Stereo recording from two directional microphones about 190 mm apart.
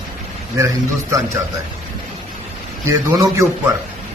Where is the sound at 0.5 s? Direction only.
20° right (ahead or behind).